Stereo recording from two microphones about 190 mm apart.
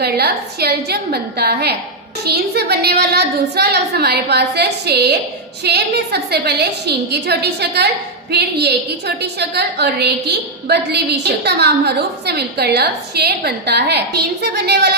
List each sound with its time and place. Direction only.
0.0 s a woman's voice: 60° right (ahead or behind)